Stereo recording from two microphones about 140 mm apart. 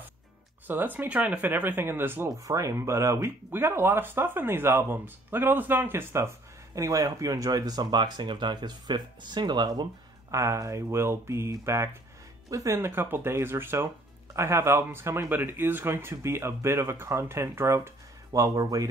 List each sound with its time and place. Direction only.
0.7 s speech: 15° right (ahead or behind)